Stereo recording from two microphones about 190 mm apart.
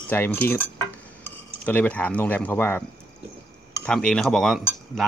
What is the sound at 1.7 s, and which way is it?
Speech, 10° left (ahead or behind).